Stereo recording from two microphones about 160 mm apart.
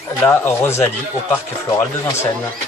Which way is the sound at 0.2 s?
15° left (ahead or behind).